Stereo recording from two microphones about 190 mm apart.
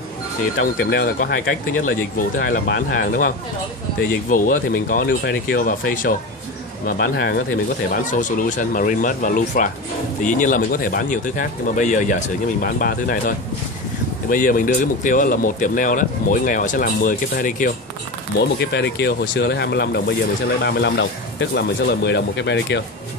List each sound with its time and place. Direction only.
0.6 s speech: 50° left (ahead or behind)
6.9 s speech: 60° left (ahead or behind)
7.9 s speech: 45° left (ahead or behind)
14.3 s speech: 45° left (ahead or behind)
18.6 s speech: 65° left (ahead or behind)
20.6 s speech: 70° left (ahead or behind)